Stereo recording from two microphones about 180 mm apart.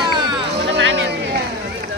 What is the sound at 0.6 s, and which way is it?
Music, 85° right.